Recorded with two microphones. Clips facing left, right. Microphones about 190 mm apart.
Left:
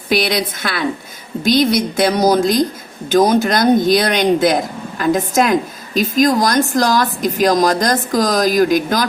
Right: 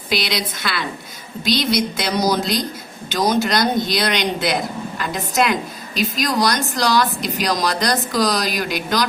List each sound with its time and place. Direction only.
0.3 s speech: 50° left (ahead or behind)